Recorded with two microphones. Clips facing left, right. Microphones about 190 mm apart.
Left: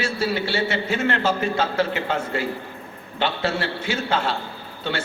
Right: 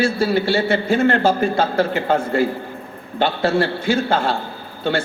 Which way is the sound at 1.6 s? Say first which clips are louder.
Right 4 dB; 50° right (ahead or behind).